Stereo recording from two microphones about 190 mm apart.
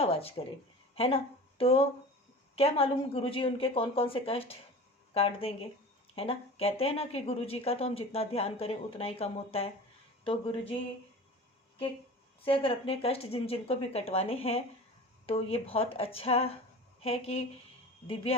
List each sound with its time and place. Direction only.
0.0 s a woman's voice: 30° left (ahead or behind)
12.5 s a woman's voice: 30° left (ahead or behind)